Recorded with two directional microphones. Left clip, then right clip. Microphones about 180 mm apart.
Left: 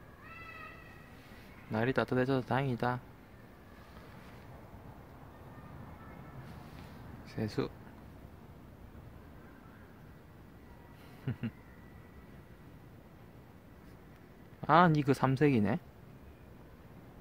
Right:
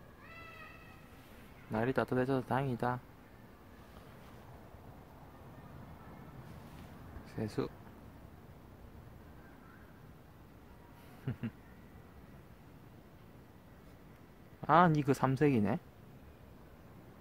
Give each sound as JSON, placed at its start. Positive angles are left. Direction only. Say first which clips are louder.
{"t": 1.7, "sound": "speech", "louder": "left 2 dB", "side_deg": 0}
{"t": 7.2, "sound": "speech", "louder": "left 2 dB", "side_deg": 0}
{"t": 11.3, "sound": "a sound", "louder": "left 2 dB", "side_deg": 0}
{"t": 14.6, "sound": "speech", "louder": "left 1 dB", "side_deg": 0}